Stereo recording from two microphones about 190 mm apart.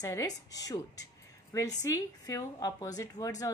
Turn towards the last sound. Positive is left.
turn(degrees=20)  # may be behind; listen again after turning